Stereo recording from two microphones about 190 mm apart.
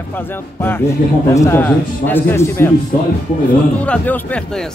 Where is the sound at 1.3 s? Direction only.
15° left (ahead or behind).